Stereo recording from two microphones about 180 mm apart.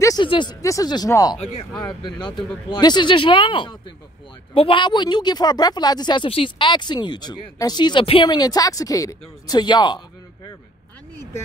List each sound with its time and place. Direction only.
0.0 s speech: 25° left (ahead or behind)